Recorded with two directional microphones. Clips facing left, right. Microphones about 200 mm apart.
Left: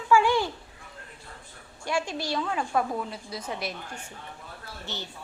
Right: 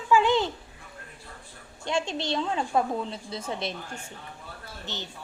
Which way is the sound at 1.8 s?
25° right (ahead or behind).